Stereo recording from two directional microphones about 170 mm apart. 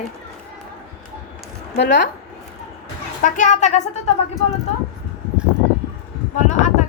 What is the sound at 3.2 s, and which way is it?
Speech, 45° left (ahead or behind).